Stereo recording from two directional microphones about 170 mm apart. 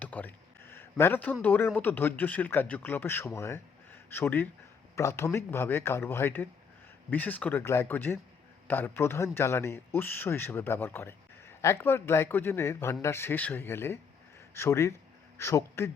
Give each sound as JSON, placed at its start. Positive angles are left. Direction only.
{"t": 0.0, "sound": "a man's voice", "side_deg": 10}